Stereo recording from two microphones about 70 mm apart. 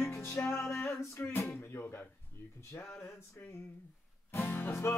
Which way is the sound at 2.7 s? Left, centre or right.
Left.